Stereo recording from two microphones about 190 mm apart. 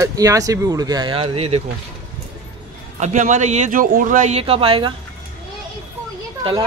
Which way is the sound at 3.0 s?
40° right (ahead or behind).